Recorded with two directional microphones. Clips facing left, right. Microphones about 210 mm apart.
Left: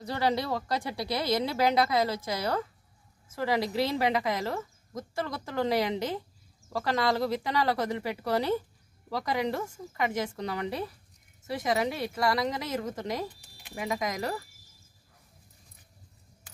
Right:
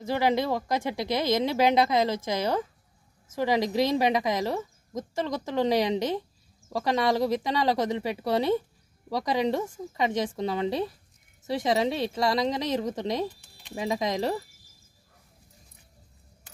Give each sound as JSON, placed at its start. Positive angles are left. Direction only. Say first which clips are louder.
{"t": 0.1, "sound": "a woman's voice", "louder": "right 4 dB", "side_deg": -15}